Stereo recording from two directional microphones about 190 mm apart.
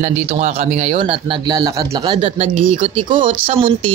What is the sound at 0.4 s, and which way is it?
Speech, 35° right (ahead or behind).